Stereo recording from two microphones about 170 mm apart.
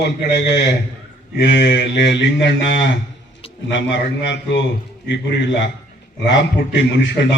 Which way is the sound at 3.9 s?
90° left.